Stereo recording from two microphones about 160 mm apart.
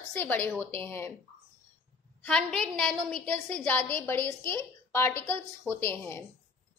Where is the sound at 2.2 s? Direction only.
5° left (ahead or behind).